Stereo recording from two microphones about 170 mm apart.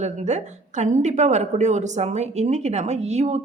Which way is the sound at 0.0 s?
45° right (ahead or behind).